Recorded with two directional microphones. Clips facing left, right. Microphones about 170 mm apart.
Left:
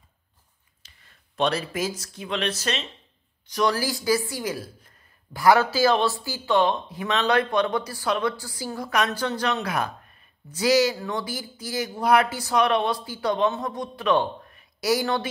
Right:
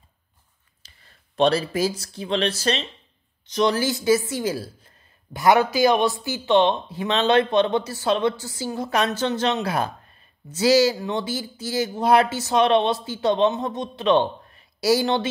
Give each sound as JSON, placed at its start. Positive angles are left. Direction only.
{"t": 0.8, "sound": "speech", "side_deg": -30}
{"t": 3.4, "sound": "speech", "side_deg": -20}